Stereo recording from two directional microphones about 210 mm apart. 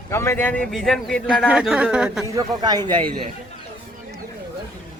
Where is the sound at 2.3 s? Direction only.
20° right (ahead or behind).